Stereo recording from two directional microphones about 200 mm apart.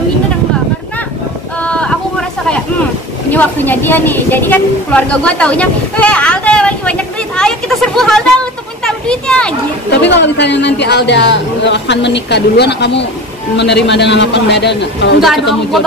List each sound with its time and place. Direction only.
1.6 s a sound: 5° left (ahead or behind)
3.3 s a woman's voice: 10° left (ahead or behind)
9.8 s a man's voice: 60° left (ahead or behind)